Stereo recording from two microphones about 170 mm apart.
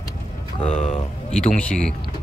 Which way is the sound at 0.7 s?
40° left (ahead or behind).